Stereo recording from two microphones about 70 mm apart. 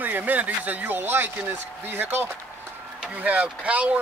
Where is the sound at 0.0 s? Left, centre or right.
Right.